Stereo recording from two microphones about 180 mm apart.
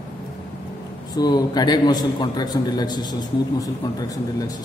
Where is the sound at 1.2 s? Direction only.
20° left (ahead or behind).